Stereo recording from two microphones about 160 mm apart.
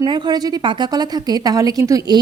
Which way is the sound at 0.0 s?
25° right (ahead or behind).